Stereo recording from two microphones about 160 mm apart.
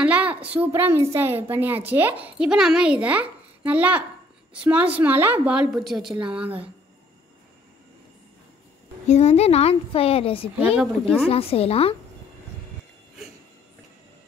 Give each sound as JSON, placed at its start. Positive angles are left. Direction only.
{"t": 0.0, "sound": "a woman's voice", "side_deg": -10}
{"t": 9.0, "sound": "a woman's voice", "side_deg": 45}
{"t": 10.8, "sound": "speech", "side_deg": -5}
{"t": 11.2, "sound": "a woman's voice", "side_deg": 40}